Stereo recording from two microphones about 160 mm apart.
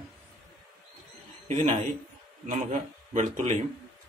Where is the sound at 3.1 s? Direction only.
45° right (ahead or behind).